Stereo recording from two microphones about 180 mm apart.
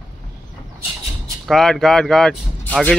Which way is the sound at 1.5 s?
Centre (ahead or behind).